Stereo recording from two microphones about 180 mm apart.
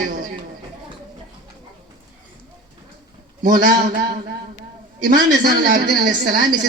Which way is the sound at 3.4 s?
50° right (ahead or behind).